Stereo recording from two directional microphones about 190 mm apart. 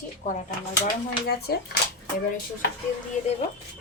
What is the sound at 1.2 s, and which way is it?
Speech, 55° left (ahead or behind).